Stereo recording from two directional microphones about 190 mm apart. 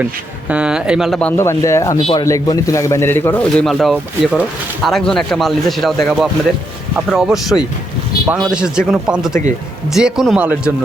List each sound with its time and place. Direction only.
0.0 s a man's voice: 5° right (ahead or behind)
1.4 s a man's voice: 15° left (ahead or behind); by 10.7 s 5° right (ahead or behind)